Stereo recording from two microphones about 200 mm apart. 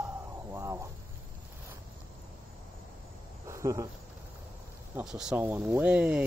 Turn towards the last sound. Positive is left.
turn(degrees=-5)  # may be behind; listen again after turning